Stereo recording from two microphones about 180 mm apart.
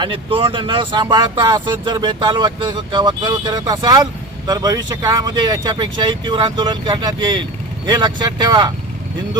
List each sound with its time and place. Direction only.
0.0 s speech: 30° right (ahead or behind)